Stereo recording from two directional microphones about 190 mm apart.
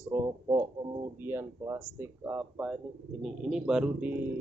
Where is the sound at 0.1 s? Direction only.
15° right (ahead or behind).